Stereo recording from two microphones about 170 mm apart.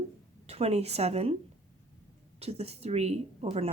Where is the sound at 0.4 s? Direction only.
35° right (ahead or behind).